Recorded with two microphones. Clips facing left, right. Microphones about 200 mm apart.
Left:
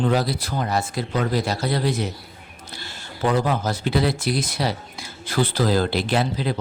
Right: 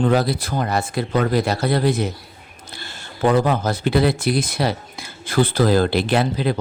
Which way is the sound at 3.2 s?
55° right (ahead or behind).